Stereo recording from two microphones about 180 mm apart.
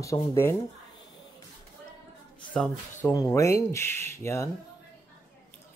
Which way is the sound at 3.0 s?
15° left (ahead or behind).